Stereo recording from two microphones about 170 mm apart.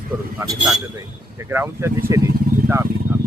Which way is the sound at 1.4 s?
15° right (ahead or behind).